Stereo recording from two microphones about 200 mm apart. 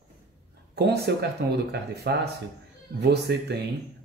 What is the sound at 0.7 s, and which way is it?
Speech, 55° right (ahead or behind).